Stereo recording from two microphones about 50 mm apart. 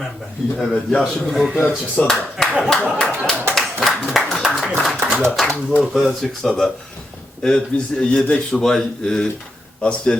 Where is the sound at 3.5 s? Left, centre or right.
Centre.